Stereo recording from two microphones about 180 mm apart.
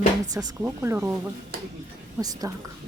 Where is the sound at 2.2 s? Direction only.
20° right (ahead or behind).